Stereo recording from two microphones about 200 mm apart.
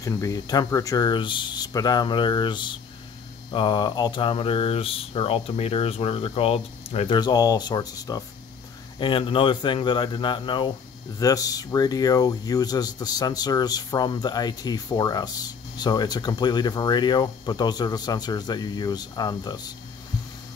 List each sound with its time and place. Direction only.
0.0 s speech: 15° left (ahead or behind)